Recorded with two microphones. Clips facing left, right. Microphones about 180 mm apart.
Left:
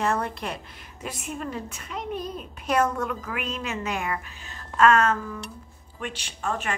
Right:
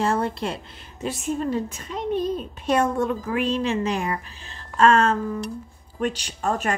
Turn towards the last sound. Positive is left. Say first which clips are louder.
# right 5 dB
turn(degrees=-40)  # may be behind; listen again after turning